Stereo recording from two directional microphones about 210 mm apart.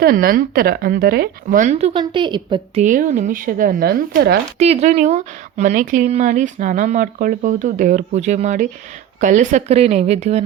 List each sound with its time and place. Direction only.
0.0 s speech: 45° right (ahead or behind); by 2.8 s 20° right (ahead or behind)
2.8 s speech: 40° right (ahead or behind)
4.5 s speech: 30° right (ahead or behind)